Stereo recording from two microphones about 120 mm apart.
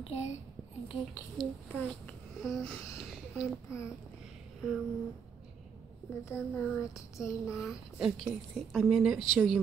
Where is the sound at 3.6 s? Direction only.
25° left (ahead or behind).